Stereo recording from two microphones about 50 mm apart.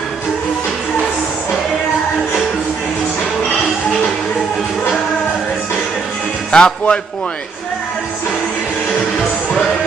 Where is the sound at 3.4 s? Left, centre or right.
Centre.